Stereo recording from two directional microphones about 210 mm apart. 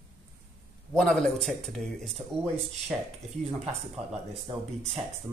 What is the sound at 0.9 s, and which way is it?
Speech, centre (ahead or behind).